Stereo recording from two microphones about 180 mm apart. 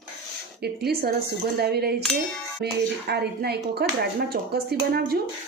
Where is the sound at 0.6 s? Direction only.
60° right (ahead or behind).